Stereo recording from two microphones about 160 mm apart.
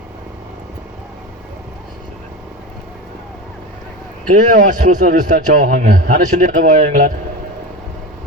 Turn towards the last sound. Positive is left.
turn(degrees=-55)  # may be behind; listen again after turning